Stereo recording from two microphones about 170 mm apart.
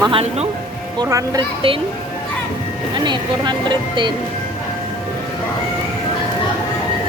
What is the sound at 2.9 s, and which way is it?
Speech, 25° right (ahead or behind).